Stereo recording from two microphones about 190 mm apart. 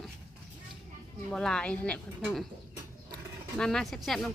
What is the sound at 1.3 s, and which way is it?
A woman's voice, 5° left (ahead or behind).